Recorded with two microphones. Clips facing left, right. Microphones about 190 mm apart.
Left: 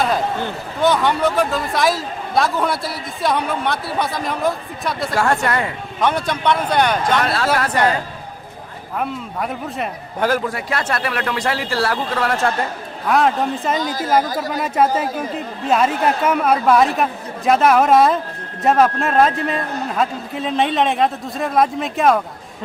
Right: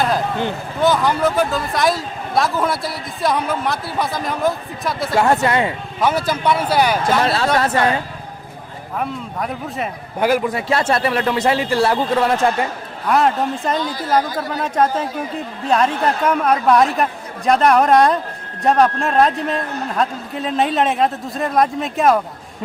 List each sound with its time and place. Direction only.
0.8 s a man's voice: centre (ahead or behind)
5.4 s speech: 20° right (ahead or behind)
6.0 s a man's voice: 5° right (ahead or behind)
7.2 s speech: 30° right (ahead or behind)
9.0 s a man's voice: centre (ahead or behind)
10.2 s a man's voice: 15° right (ahead or behind)
10.7 s speech: 25° right (ahead or behind)
13.1 s a man's voice: centre (ahead or behind)